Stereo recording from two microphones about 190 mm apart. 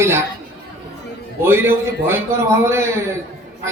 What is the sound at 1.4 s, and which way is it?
A man's voice, 10° right (ahead or behind).